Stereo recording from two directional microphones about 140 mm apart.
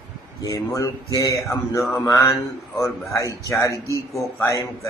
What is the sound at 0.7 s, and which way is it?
Speech, 25° left (ahead or behind).